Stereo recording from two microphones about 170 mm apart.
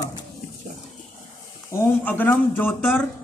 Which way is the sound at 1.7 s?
15° left (ahead or behind).